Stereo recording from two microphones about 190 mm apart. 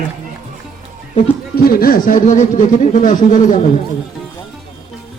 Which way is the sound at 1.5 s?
50° left (ahead or behind).